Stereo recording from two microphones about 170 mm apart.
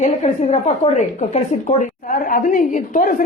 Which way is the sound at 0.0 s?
40° left (ahead or behind).